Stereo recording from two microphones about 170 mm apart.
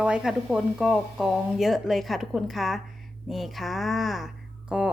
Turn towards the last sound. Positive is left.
turn(degrees=-5)  # may be behind; listen again after turning